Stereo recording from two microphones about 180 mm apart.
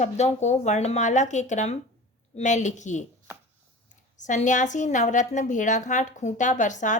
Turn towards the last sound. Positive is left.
turn(degrees=45)  # may be behind; listen again after turning